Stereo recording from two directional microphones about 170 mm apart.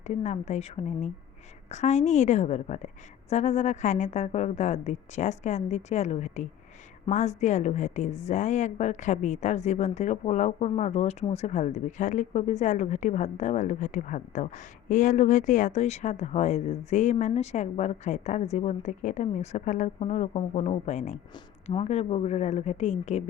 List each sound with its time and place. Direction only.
0.1 s a woman's voice: 40° left (ahead or behind)